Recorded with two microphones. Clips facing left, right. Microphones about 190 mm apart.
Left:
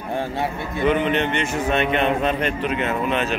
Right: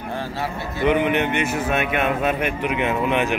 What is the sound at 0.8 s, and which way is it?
A man's voice, 15° right (ahead or behind).